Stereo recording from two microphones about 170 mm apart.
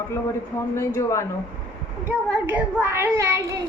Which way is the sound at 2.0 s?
10° right (ahead or behind).